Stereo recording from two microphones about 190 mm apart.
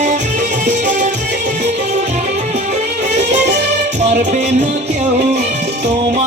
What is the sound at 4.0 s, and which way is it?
Music, 40° right (ahead or behind).